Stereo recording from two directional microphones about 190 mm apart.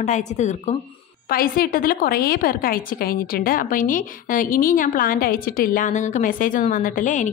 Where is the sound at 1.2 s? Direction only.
50° left (ahead or behind).